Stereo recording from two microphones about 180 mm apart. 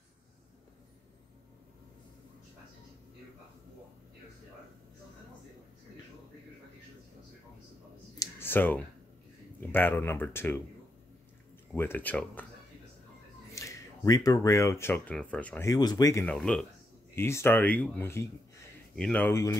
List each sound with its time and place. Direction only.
8.2 s clicking: 10° left (ahead or behind)
9.6 s speech: 10° left (ahead or behind)
11.7 s speech: 10° left (ahead or behind)
13.6 s speech: 20° left (ahead or behind)
16.3 s speech: 5° left (ahead or behind)